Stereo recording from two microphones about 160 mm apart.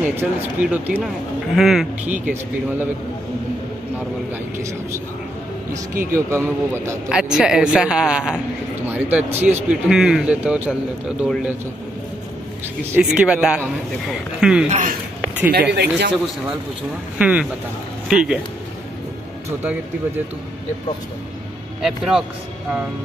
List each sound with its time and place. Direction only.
0.0 s speech: 10° right (ahead or behind)
6.1 s speech: 15° right (ahead or behind)
7.1 s a man's voice: 5° right (ahead or behind)
12.9 s a man's voice: 5° right (ahead or behind)
14.7 s speech: 50° right (ahead or behind)
15.7 s a man's voice: 90° right
17.2 s a man's voice: 5° right (ahead or behind)
21.8 s a man's voice: centre (ahead or behind)